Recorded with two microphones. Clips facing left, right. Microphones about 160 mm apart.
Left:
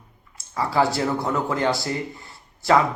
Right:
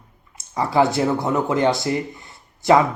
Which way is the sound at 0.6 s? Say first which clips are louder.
Right 3 dB; 20° right (ahead or behind).